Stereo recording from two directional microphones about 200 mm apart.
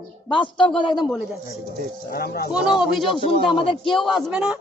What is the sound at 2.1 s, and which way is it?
Speech, 50° left (ahead or behind).